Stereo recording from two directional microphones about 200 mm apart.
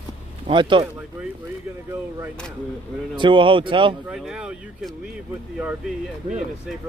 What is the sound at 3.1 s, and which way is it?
Speech, 25° right (ahead or behind).